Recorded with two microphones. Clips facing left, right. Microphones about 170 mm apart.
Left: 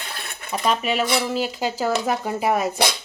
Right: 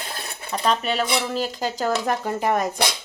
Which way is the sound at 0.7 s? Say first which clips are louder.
Left 1 dB; 10° left (ahead or behind).